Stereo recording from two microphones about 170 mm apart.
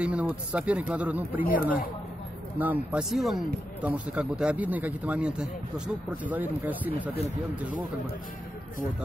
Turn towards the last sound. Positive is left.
turn(degrees=-10)  # may be behind; listen again after turning